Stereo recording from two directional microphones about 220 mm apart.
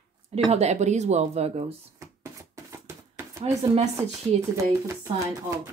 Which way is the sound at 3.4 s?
30° right (ahead or behind).